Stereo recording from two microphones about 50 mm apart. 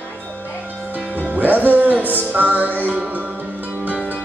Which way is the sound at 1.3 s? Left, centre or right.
Right.